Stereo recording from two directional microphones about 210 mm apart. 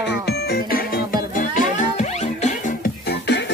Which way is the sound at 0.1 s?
50° left (ahead or behind).